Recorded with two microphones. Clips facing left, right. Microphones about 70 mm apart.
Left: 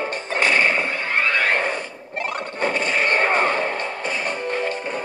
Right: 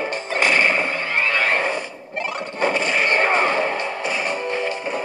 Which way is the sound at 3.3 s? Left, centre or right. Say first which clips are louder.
Right 1 dB; left.